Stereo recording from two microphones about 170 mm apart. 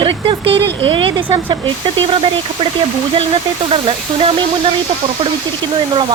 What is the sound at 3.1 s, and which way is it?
A woman's voice, 35° right (ahead or behind).